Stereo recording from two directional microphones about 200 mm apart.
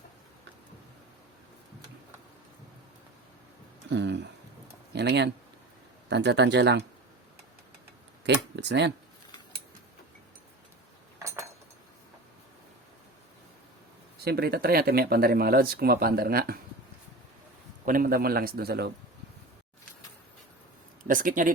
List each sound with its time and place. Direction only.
3.8 s speech: 60° right (ahead or behind)
8.2 s a sound: 60° right (ahead or behind)
11.2 s a sound: 15° right (ahead or behind)
14.3 s speech: 50° right (ahead or behind)
17.8 s speech: 45° right (ahead or behind)
21.0 s speech: 40° right (ahead or behind)